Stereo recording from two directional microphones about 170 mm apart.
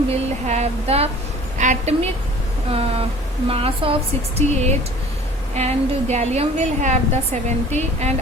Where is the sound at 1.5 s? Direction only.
45° right (ahead or behind).